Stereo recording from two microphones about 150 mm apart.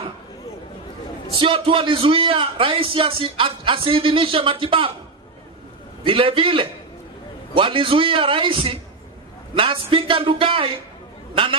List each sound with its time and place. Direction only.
1.3 s a man's voice: 35° right (ahead or behind)
6.0 s a man's voice: 35° right (ahead or behind)